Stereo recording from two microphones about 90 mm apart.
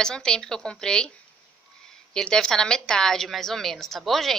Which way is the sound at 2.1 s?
5° left (ahead or behind).